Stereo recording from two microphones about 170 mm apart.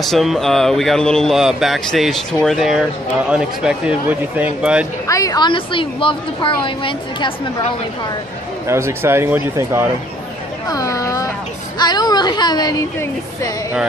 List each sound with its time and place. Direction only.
0.0 s speech: centre (ahead or behind)
5.0 s a woman's voice: 20° left (ahead or behind)
8.6 s speech: 15° right (ahead or behind)
10.7 s a sound: 20° left (ahead or behind)
11.8 s a woman's voice: 25° left (ahead or behind)